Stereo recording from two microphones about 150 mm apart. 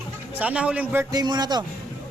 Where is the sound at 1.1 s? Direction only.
25° right (ahead or behind).